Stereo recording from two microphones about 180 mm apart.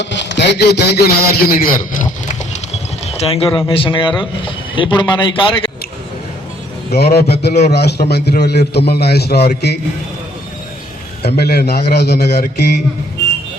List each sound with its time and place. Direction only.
0.0 s a man's voice: 75° left (ahead or behind); by 2.3 s 50° left (ahead or behind)
2.7 s a man's voice: 35° left (ahead or behind)
6.9 s a man's voice: 60° left (ahead or behind)
11.2 s a man's voice: 65° left (ahead or behind)